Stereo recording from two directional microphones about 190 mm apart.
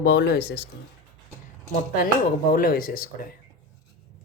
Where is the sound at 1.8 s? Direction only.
50° left (ahead or behind).